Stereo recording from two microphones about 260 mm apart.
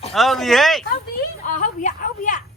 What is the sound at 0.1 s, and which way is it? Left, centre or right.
Speech, centre.